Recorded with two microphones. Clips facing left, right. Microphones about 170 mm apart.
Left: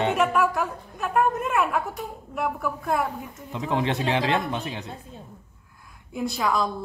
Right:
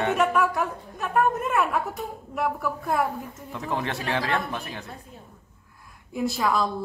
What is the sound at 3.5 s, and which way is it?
Speech, 20° left (ahead or behind).